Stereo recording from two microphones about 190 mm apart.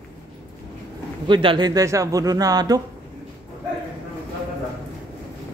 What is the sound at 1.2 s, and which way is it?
Speech, 25° right (ahead or behind).